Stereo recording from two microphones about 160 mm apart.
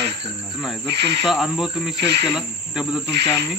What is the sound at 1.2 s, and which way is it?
Speech, centre (ahead or behind).